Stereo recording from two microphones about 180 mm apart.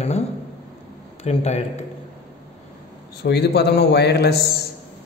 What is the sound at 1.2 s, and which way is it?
Speech, 35° left (ahead or behind).